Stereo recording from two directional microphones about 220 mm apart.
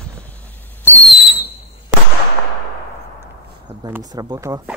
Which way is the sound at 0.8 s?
Centre (ahead or behind).